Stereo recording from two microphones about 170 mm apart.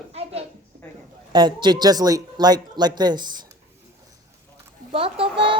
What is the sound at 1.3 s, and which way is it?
Speech, 25° right (ahead or behind).